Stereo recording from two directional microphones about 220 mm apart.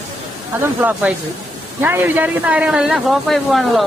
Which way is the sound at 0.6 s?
10° right (ahead or behind).